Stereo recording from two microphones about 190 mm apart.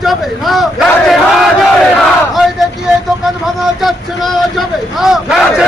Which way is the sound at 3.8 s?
Centre (ahead or behind).